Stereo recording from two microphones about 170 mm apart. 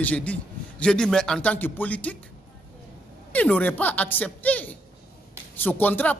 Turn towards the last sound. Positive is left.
turn(degrees=10)  # may be behind; listen again after turning